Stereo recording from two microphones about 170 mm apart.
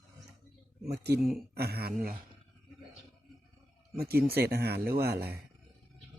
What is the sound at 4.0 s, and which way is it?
Speech, 65° right (ahead or behind).